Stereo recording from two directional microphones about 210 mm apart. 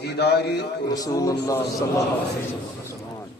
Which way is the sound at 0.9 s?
15° left (ahead or behind).